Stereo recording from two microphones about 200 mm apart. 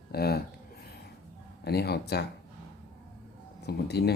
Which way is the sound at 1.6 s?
55° left (ahead or behind).